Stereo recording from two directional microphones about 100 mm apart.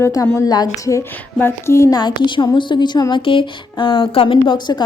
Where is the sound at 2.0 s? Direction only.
50° left (ahead or behind).